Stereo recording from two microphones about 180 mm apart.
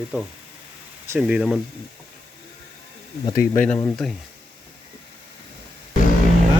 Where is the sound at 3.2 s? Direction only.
20° left (ahead or behind).